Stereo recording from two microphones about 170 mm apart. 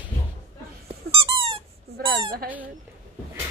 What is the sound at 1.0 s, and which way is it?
Squeak, 35° right (ahead or behind).